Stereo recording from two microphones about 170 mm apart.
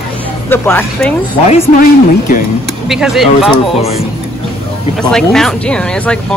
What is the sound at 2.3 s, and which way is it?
Speech, 55° left (ahead or behind).